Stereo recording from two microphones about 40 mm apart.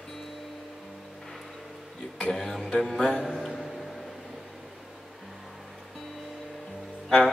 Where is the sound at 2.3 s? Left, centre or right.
Centre.